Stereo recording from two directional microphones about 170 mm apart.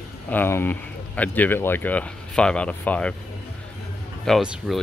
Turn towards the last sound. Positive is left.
turn(degrees=-5)  # may be behind; listen again after turning